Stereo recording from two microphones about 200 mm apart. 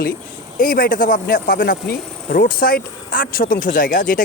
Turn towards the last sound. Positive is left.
turn(degrees=40)  # may be behind; listen again after turning